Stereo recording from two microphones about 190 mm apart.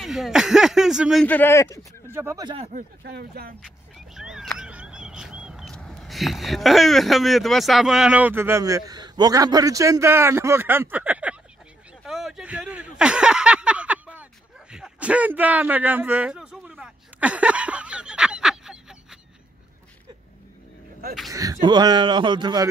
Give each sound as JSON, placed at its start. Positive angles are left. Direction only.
{"t": 0.0, "sound": "speech", "side_deg": 0}
{"t": 1.2, "sound": "speech", "side_deg": 10}
{"t": 2.0, "sound": "speech", "side_deg": -15}
{"t": 3.0, "sound": "speech", "side_deg": -55}
{"t": 3.6, "sound": "speech", "side_deg": -5}
{"t": 12.0, "sound": "a sound", "side_deg": 0}
{"t": 21.3, "sound": "speech", "side_deg": -20}